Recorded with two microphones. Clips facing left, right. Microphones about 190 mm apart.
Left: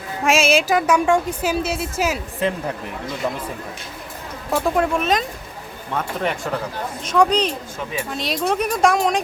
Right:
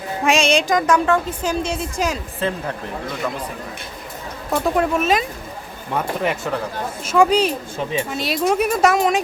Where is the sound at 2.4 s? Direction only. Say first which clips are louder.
Left 1 dB; 15° left (ahead or behind).